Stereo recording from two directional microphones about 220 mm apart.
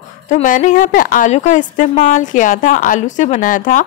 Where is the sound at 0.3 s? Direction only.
35° left (ahead or behind).